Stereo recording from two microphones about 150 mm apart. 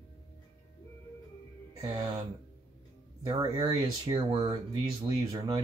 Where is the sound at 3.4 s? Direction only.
25° right (ahead or behind).